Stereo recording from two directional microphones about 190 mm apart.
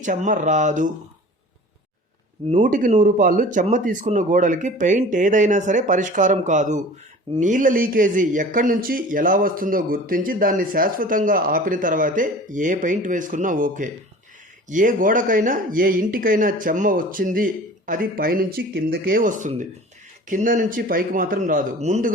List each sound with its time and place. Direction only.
0.0 s speech: 40° right (ahead or behind)
2.5 s a man's voice: 40° right (ahead or behind)